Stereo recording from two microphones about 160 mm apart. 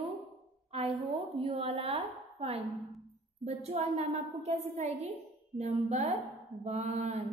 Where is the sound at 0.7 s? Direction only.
40° right (ahead or behind).